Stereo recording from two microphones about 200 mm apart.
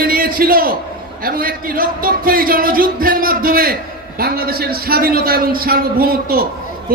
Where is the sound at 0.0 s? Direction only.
45° right (ahead or behind).